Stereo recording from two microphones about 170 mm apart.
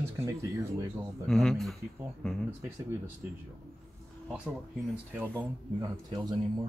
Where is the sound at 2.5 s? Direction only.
15° right (ahead or behind).